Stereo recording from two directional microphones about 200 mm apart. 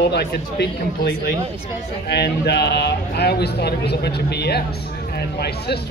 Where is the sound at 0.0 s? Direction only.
55° left (ahead or behind).